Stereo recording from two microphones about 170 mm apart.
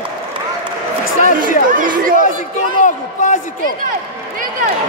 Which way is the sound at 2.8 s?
50° left (ahead or behind).